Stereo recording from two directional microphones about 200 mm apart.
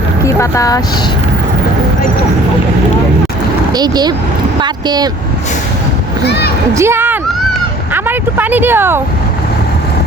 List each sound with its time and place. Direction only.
0.3 s speech: 15° left (ahead or behind)
3.8 s speech: 20° right (ahead or behind)
6.2 s a child's voice: 55° left (ahead or behind)
6.7 s speech: 10° right (ahead or behind)